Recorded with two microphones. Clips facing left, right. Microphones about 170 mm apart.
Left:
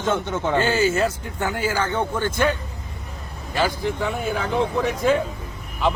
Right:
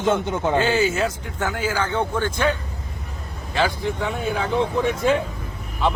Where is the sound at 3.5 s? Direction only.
Centre (ahead or behind).